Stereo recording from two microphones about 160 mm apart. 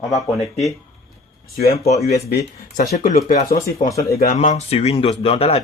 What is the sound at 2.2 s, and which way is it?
Speech, 75° left (ahead or behind).